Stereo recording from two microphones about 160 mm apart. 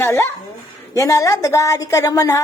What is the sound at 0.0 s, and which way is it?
Speech, 15° left (ahead or behind).